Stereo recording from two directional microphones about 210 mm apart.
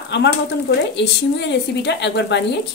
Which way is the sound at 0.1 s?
55° left (ahead or behind).